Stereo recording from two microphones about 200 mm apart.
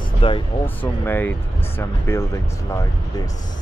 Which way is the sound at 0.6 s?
10° left (ahead or behind).